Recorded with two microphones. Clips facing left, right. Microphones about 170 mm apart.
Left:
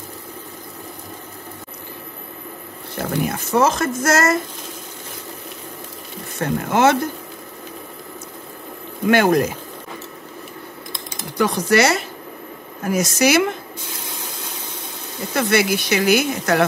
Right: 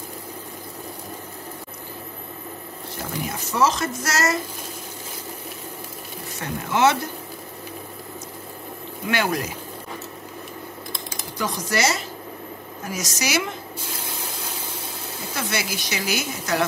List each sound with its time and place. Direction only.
3.0 s speech: 55° left (ahead or behind)
6.4 s speech: 50° left (ahead or behind)
9.0 s speech: 50° left (ahead or behind)
11.3 s speech: 65° left (ahead or behind)
15.3 s speech: 60° left (ahead or behind)